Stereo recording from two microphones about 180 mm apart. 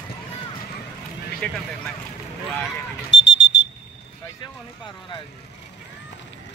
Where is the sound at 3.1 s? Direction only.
90° left.